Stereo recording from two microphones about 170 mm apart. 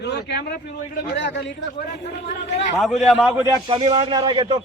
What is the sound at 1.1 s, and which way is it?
Speech, 90° left.